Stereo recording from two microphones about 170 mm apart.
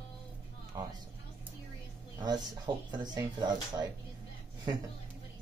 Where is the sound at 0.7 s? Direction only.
20° right (ahead or behind).